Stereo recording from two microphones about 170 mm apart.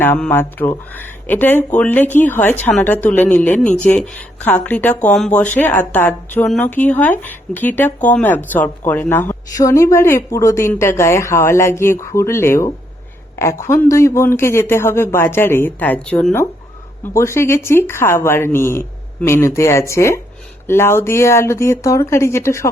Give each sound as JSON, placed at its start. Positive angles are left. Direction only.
{"t": 0.0, "sound": "speech", "side_deg": 10}